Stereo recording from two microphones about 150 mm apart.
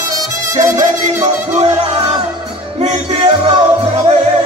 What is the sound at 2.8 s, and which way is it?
Music, 40° right (ahead or behind).